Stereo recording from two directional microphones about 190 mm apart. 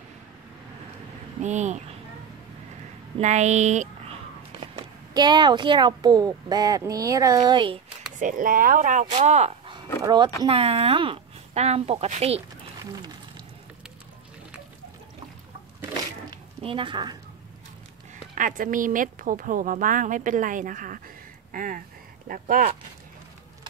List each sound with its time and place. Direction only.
1.4 s speech: 40° right (ahead or behind)
3.2 s a woman's voice: 35° right (ahead or behind)
8.2 s speech: 45° right (ahead or behind)
10.0 s a woman's voice: 25° right (ahead or behind)
16.6 s a woman's voice: 25° right (ahead or behind)
18.1 s speech: 45° right (ahead or behind)